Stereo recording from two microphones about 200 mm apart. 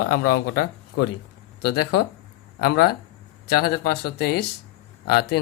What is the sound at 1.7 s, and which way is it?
Speech, 55° left (ahead or behind).